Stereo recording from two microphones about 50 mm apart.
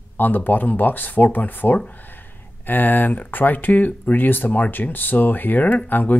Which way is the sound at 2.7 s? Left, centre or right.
Left.